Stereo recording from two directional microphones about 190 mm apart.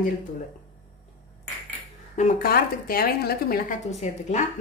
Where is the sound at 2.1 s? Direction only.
45° left (ahead or behind).